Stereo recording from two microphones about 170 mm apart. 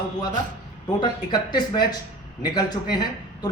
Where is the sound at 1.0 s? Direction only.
25° left (ahead or behind).